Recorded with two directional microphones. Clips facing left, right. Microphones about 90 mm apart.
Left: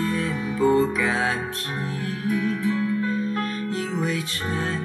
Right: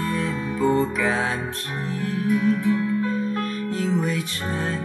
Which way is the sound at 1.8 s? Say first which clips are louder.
Right 4 dB; 30° right (ahead or behind).